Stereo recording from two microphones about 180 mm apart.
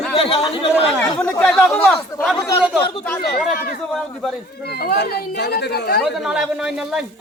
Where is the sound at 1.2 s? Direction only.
10° left (ahead or behind).